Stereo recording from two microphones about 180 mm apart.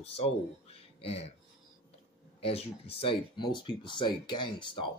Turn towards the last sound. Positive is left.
turn(degrees=25)  # may be behind; listen again after turning